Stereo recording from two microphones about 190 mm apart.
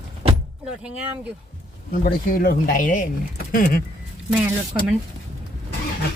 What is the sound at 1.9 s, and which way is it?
Speech, 50° left (ahead or behind).